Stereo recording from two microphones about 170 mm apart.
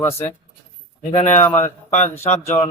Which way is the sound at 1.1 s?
40° left (ahead or behind).